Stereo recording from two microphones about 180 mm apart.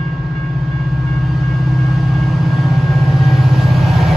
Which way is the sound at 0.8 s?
Centre (ahead or behind).